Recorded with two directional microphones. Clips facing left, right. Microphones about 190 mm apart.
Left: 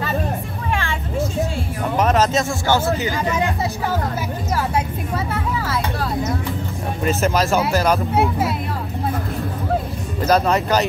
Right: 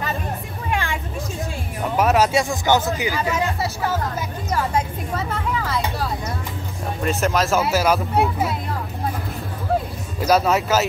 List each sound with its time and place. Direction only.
0.7 s vehicle: 15° right (ahead or behind)
2.0 s speech: 10° right (ahead or behind)
4.6 s speech: 10° left (ahead or behind)
7.1 s speech: centre (ahead or behind)
10.2 s speech: 5° right (ahead or behind)